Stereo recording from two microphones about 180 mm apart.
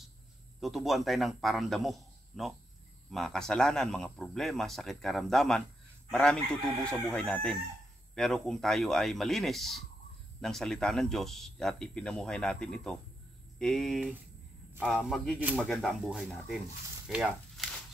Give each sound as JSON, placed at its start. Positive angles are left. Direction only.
{"t": 0.6, "sound": "a man's voice", "side_deg": 0}